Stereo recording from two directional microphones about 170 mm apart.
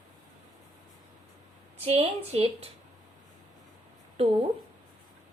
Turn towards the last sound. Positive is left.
turn(degrees=-35)  # may be behind; listen again after turning